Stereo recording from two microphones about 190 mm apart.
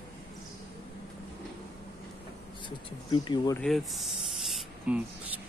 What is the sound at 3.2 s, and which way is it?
Speech, 20° left (ahead or behind).